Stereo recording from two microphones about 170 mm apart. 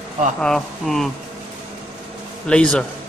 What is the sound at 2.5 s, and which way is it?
Speech, 5° left (ahead or behind).